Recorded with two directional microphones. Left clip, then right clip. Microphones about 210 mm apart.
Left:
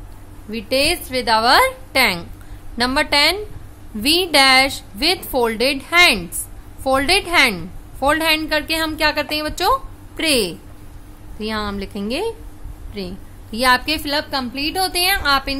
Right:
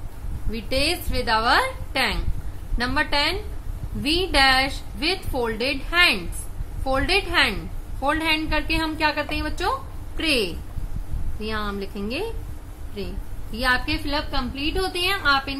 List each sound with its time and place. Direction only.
0.5 s a woman's voice: 30° left (ahead or behind); by 15.5 s 50° left (ahead or behind)